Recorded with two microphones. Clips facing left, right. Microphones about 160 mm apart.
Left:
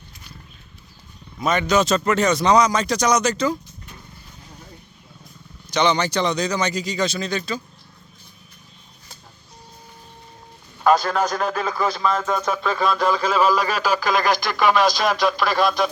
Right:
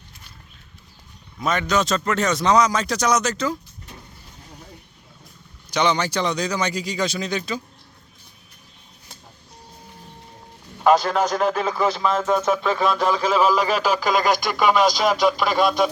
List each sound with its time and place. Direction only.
1.4 s speech: centre (ahead or behind)
5.7 s speech: 10° right (ahead or behind)
11.1 s speech: 20° right (ahead or behind)
12.1 s speech: 5° right (ahead or behind)